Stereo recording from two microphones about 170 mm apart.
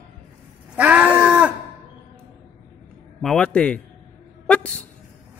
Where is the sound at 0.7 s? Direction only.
10° right (ahead or behind).